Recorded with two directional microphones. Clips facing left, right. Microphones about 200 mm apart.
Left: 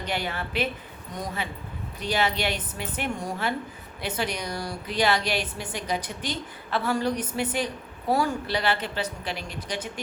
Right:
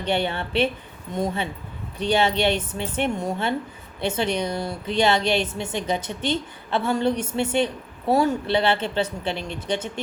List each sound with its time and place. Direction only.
0.0 s a woman's voice: 30° right (ahead or behind)